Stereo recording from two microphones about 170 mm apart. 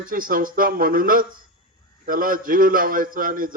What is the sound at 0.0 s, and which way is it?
A man's voice, 55° right (ahead or behind).